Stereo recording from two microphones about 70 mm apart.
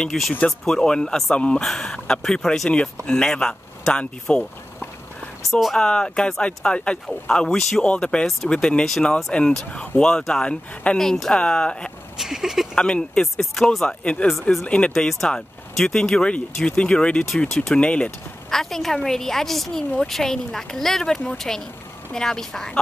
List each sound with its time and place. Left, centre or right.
0.0 s a woman's voice: centre
5.5 s a woman's voice: centre
5.8 s a woman's voice: centre
7.8 s speech: centre
11.0 s speech: centre
12.2 s speech: centre
12.7 s speech: centre
18.5 s a woman's voice: centre